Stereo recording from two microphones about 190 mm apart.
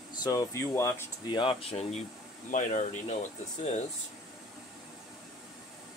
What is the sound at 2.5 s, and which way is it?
Speech, 45° left (ahead or behind).